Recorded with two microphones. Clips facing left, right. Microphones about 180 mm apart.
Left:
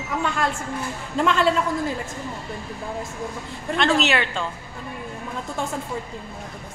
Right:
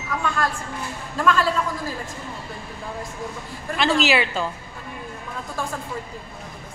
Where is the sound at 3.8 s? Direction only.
Centre (ahead or behind).